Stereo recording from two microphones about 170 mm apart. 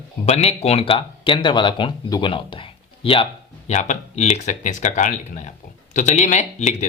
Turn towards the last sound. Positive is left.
turn(degrees=45)  # may be behind; listen again after turning